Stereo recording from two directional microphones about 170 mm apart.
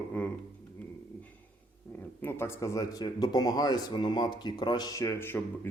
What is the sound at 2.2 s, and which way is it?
Speech, 15° left (ahead or behind).